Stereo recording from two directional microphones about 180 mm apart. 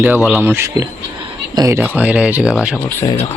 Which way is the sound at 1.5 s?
20° right (ahead or behind).